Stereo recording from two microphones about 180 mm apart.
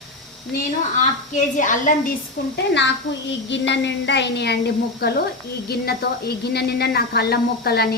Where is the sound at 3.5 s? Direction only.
80° left; by 7.8 s 60° left (ahead or behind).